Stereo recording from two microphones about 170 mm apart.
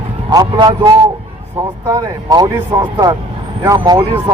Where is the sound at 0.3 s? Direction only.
25° right (ahead or behind).